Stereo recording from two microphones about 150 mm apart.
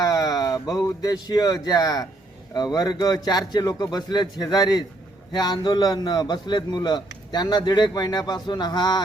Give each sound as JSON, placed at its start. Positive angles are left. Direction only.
{"t": 0.0, "sound": "a man's voice", "side_deg": 25}